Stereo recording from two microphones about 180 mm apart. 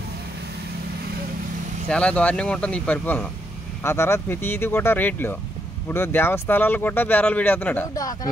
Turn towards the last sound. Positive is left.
turn(degrees=10)  # may be behind; listen again after turning